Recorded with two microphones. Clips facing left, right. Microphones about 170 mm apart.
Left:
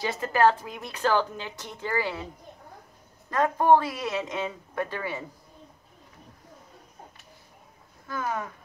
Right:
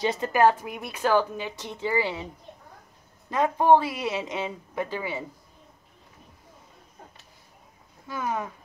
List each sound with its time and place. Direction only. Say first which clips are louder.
0.0 s a woman's voice: right 1 dB; 20° right (ahead or behind)
3.3 s a woman's voice: right 1 dB; 15° right (ahead or behind)
8.1 s a woman's voice: right 1 dB; 10° right (ahead or behind)